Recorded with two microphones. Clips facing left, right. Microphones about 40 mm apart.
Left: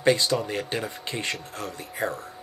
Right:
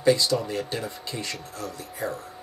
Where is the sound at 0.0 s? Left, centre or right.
Left.